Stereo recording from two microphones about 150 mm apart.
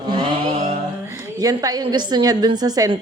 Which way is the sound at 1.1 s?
20° right (ahead or behind).